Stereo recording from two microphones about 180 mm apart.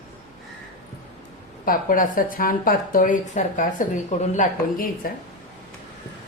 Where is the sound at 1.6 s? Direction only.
50° left (ahead or behind).